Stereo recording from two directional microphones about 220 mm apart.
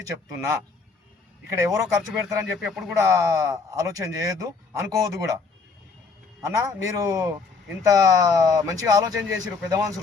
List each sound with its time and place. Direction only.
0.1 s speech: 15° right (ahead or behind)
2.6 s speech: centre (ahead or behind)
2.9 s speech: 15° right (ahead or behind)
6.4 s speech: 15° right (ahead or behind)